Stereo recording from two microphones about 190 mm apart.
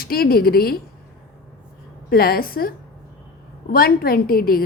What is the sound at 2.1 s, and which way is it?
A woman's voice, 50° left (ahead or behind).